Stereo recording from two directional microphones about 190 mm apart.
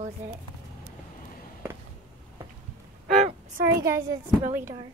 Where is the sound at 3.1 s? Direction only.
40° right (ahead or behind).